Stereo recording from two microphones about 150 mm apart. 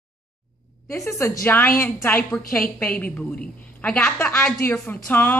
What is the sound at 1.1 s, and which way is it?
A woman's voice, 20° left (ahead or behind).